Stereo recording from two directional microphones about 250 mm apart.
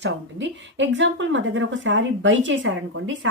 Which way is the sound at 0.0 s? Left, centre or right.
Right.